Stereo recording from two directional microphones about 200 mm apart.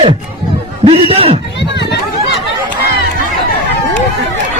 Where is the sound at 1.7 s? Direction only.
60° left (ahead or behind).